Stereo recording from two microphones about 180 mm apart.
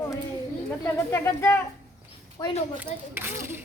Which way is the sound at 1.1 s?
15° left (ahead or behind).